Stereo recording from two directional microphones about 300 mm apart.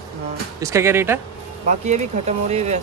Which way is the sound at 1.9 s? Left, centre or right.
Right.